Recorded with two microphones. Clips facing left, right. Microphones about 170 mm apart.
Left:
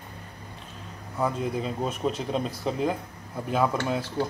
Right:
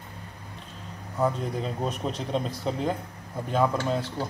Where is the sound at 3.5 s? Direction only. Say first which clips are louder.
Even; 5° left (ahead or behind).